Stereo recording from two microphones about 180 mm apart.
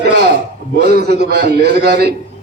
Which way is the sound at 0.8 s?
65° right (ahead or behind).